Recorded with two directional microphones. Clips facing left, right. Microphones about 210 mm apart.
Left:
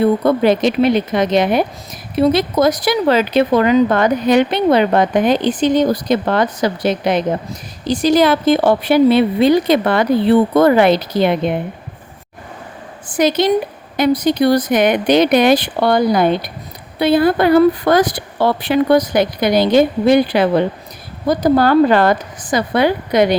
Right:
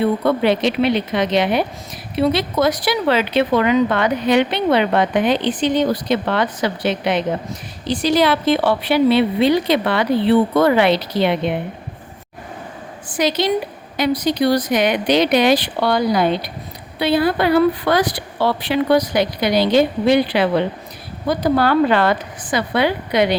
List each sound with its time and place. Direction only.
0.0 s a woman's voice: 40° left (ahead or behind)
13.1 s a woman's voice: 50° left (ahead or behind)